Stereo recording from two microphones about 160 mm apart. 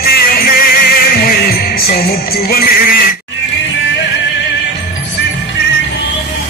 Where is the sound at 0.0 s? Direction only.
70° left (ahead or behind).